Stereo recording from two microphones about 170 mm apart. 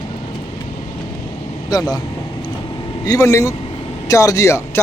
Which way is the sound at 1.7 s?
20° left (ahead or behind).